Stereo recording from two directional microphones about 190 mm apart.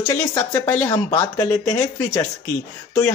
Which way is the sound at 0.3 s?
10° left (ahead or behind).